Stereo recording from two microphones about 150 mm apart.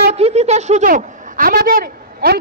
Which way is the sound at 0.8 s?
65° right (ahead or behind).